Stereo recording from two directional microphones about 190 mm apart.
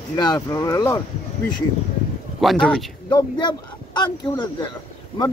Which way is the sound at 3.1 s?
25° left (ahead or behind).